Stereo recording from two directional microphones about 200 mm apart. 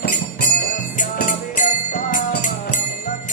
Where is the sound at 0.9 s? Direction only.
40° left (ahead or behind).